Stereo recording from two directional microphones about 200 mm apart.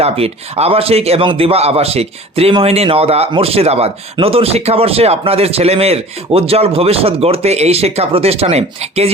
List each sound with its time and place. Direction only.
0.0 s a man's voice: 30° right (ahead or behind)